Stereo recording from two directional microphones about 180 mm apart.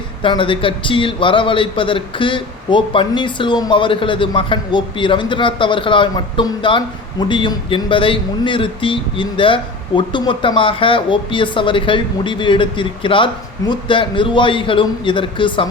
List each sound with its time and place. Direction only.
0.2 s a man's voice: 30° left (ahead or behind)